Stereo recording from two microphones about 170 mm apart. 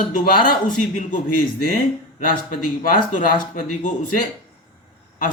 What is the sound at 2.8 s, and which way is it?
Speech, 50° left (ahead or behind).